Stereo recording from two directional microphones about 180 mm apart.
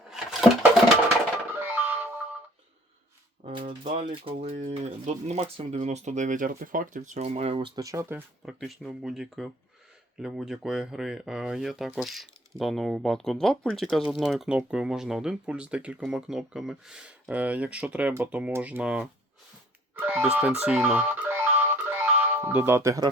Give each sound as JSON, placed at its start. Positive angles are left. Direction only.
{"t": 0.1, "sound": "a sound", "side_deg": -5}
{"t": 1.5, "sound": "music", "side_deg": -10}
{"t": 3.7, "sound": "speech", "side_deg": -30}
{"t": 8.4, "sound": "speech", "side_deg": 0}
{"t": 20.7, "sound": "music", "side_deg": -10}